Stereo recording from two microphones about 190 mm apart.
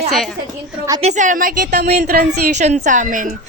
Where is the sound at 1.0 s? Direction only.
40° right (ahead or behind).